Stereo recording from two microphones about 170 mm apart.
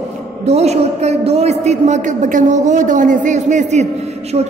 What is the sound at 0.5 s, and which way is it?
A man's voice, 40° right (ahead or behind).